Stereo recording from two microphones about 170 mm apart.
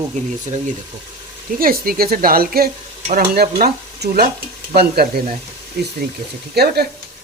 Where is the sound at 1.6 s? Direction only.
60° right (ahead or behind).